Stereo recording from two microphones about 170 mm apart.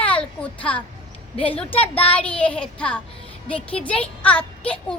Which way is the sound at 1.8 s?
10° left (ahead or behind).